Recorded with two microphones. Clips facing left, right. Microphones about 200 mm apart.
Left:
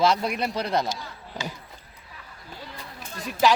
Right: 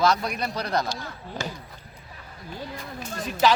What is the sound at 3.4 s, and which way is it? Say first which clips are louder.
Speech: even; 10° left (ahead or behind).